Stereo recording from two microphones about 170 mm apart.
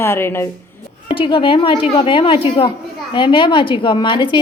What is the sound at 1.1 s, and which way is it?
A woman's voice, 30° left (ahead or behind).